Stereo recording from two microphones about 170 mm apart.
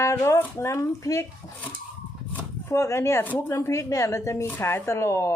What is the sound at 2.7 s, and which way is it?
Speech, 15° left (ahead or behind).